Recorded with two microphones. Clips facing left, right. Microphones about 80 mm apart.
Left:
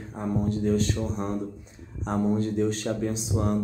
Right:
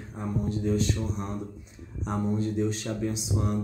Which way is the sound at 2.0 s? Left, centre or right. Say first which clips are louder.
Left 3 dB; left.